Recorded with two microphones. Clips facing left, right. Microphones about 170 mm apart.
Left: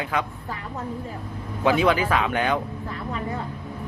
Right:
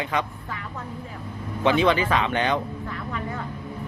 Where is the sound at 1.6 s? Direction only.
5° left (ahead or behind).